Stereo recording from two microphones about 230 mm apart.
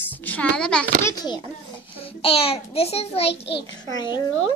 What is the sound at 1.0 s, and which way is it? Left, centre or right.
A child's voice, centre.